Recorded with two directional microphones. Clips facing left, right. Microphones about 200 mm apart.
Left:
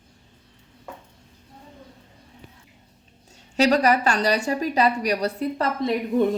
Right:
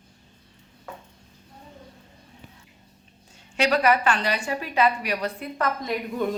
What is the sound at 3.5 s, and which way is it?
A woman's voice, 35° left (ahead or behind).